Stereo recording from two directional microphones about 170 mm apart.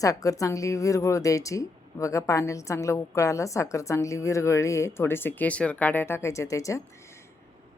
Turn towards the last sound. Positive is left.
turn(degrees=20)  # may be behind; listen again after turning